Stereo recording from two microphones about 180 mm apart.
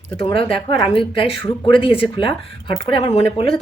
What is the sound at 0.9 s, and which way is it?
Speech, 30° left (ahead or behind).